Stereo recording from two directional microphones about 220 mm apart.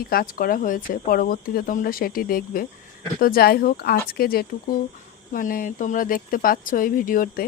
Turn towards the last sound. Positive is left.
turn(degrees=40)  # may be behind; listen again after turning